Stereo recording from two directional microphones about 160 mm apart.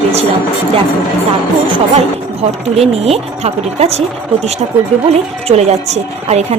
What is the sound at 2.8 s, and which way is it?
A woman's voice, 40° right (ahead or behind).